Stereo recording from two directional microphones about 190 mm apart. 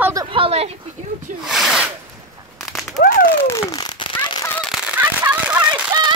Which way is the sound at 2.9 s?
45° left (ahead or behind).